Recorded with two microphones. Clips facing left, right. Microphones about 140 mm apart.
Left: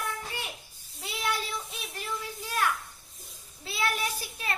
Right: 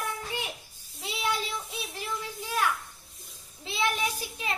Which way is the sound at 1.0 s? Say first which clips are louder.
Right 1 dB; 15° right (ahead or behind).